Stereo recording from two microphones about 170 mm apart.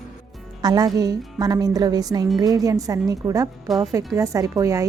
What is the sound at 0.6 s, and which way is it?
A woman's voice, 25° right (ahead or behind).